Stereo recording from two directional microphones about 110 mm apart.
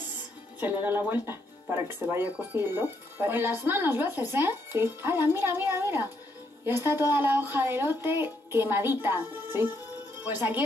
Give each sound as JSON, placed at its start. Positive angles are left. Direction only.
{"t": 0.6, "sound": "speech", "side_deg": -15}